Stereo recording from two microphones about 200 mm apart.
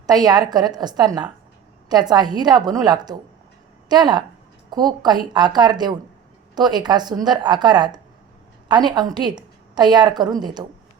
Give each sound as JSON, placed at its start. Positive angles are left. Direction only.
{"t": 0.1, "sound": "a woman's voice", "side_deg": -20}